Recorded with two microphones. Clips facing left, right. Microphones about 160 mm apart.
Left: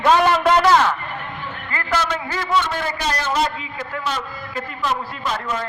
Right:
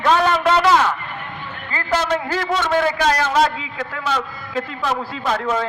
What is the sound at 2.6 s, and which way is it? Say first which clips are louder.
A man's voice: right 6 dB; 90° right.